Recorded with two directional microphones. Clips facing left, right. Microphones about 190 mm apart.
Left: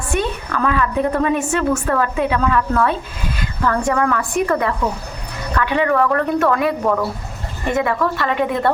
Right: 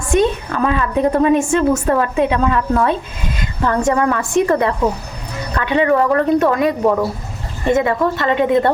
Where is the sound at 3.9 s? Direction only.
25° right (ahead or behind).